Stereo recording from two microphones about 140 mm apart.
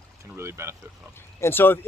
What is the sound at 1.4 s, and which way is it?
Speech, 15° left (ahead or behind).